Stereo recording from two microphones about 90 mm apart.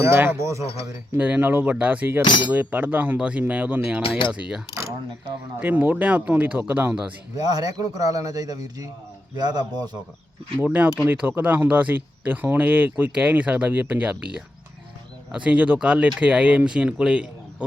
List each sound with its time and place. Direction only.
0.0 s speech: 25° right (ahead or behind)
1.1 s speech: 20° right (ahead or behind)
2.2 s speech: 60° left (ahead or behind)
2.5 s speech: 20° right (ahead or behind)
7.3 s speech: 45° right (ahead or behind)
10.6 s speech: 15° right (ahead or behind)
11.1 s speech: 20° right (ahead or behind)
15.3 s speech: 15° right (ahead or behind)